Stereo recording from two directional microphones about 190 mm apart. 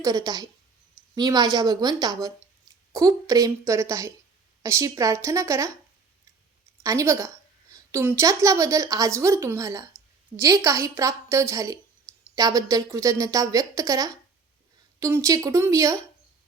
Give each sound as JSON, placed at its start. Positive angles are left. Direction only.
{"t": 0.0, "sound": "a woman's voice", "side_deg": -20}
{"t": 6.8, "sound": "a woman's voice", "side_deg": -15}